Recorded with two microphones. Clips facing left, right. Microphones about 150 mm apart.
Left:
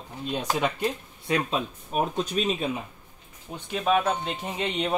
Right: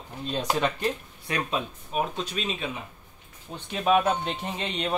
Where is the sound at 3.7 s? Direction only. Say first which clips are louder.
Right 1 dB; 5° right (ahead or behind).